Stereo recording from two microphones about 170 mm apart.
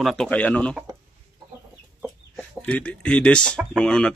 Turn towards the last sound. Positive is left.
turn(degrees=5)  # may be behind; listen again after turning